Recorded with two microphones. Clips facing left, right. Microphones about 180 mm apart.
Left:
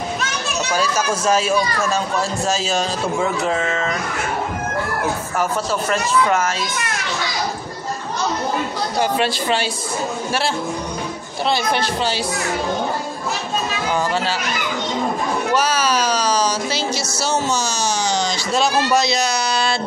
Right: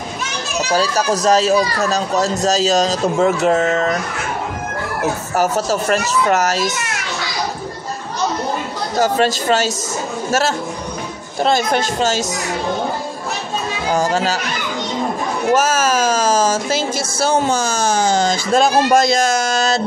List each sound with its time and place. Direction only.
0.7 s speech: 35° right (ahead or behind)
5.3 s speech: 40° right (ahead or behind)
8.9 s speech: 45° right (ahead or behind)
11.4 s speech: 45° right (ahead or behind)
13.9 s speech: 40° right (ahead or behind)
15.5 s speech: 45° right (ahead or behind)